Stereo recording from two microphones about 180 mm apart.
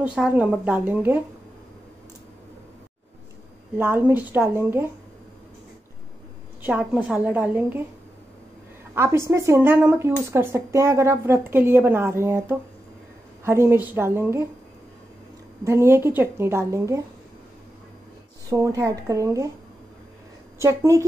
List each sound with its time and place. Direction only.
0.0 s speech: 5° right (ahead or behind)
3.7 s speech: 10° right (ahead or behind)
6.6 s speech: 5° right (ahead or behind)
8.9 s speech: 15° right (ahead or behind)
15.6 s speech: 15° right (ahead or behind)
18.5 s speech: 20° right (ahead or behind)
20.5 s a woman's voice: 15° right (ahead or behind)